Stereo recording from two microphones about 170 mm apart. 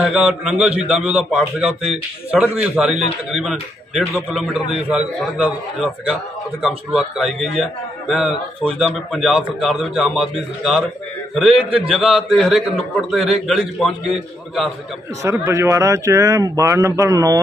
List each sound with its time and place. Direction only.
0.1 s a man's voice: 5° right (ahead or behind)
15.2 s speech: 15° right (ahead or behind)